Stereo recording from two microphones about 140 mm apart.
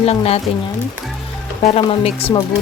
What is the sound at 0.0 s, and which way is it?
Speech, 45° left (ahead or behind).